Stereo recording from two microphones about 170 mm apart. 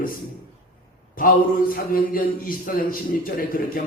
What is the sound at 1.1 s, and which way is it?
A man's voice, 55° left (ahead or behind).